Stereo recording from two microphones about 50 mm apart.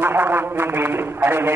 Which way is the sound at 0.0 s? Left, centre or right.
Right.